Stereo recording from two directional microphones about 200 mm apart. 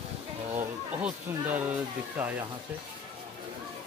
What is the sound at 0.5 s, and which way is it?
Speech, 10° right (ahead or behind).